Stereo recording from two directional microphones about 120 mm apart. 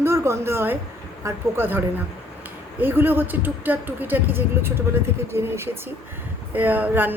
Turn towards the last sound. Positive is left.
turn(degrees=-15)  # may be behind; listen again after turning